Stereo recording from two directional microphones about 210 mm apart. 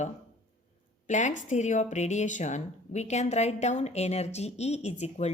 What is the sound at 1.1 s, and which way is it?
Speech, 35° left (ahead or behind).